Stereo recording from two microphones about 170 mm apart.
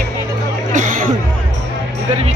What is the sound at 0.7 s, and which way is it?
Chatter, 50° right (ahead or behind).